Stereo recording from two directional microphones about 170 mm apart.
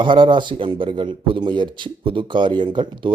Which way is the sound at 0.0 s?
30° right (ahead or behind).